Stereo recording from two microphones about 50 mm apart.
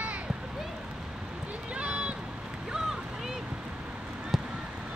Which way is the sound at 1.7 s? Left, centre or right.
Right.